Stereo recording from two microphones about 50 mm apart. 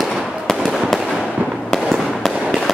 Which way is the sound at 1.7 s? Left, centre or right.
Centre.